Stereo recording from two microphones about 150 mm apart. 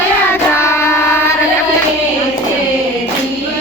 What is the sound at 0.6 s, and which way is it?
Music, 15° left (ahead or behind).